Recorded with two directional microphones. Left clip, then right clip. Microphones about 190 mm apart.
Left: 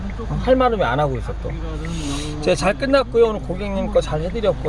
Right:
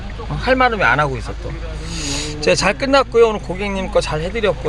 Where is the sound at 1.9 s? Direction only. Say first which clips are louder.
Right 6 dB; 5° right (ahead or behind).